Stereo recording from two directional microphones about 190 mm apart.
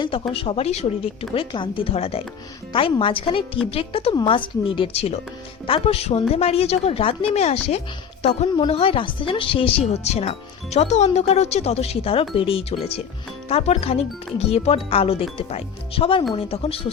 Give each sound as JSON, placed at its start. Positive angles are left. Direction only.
{"t": 0.0, "sound": "a woman's voice", "side_deg": 30}